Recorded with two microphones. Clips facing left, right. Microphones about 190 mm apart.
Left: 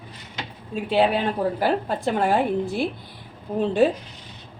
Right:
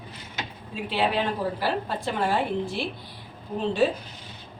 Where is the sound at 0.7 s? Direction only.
50° left (ahead or behind).